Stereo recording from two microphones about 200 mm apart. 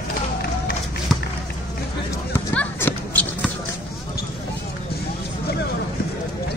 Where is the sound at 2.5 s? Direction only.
10° left (ahead or behind).